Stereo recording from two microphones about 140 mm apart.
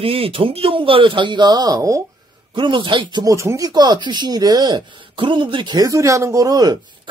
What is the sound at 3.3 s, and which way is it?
Speech, 20° right (ahead or behind).